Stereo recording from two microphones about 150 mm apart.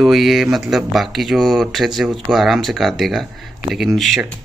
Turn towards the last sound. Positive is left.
turn(degrees=0)  # may be behind; listen again after turning